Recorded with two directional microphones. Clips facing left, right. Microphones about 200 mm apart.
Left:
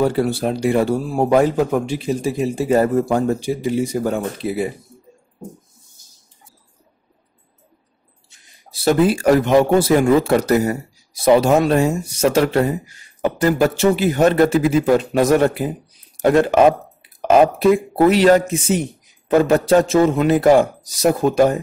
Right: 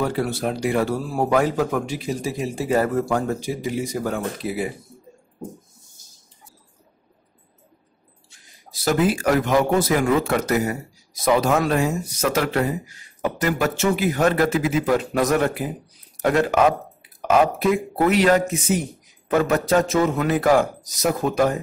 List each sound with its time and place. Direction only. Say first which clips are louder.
0.0 s a man's voice: left 5 dB; 30° left (ahead or behind)
8.7 s a man's voice: left 5 dB; 30° left (ahead or behind)